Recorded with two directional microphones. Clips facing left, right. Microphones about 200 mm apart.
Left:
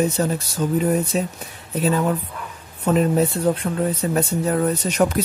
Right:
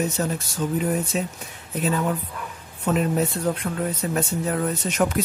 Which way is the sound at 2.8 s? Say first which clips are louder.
Left 4 dB; 35° left (ahead or behind).